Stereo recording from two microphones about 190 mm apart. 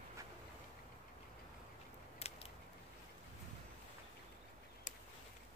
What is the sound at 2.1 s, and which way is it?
Scissors, 30° left (ahead or behind).